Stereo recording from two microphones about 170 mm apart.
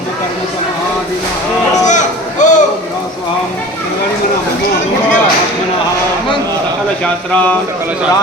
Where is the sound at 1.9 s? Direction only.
45° left (ahead or behind).